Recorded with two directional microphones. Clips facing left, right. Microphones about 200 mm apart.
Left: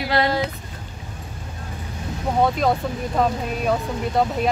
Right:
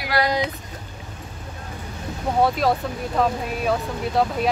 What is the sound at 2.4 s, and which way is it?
Speech, 5° right (ahead or behind).